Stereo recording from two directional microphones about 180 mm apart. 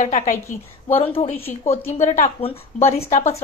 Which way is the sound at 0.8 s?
30° left (ahead or behind).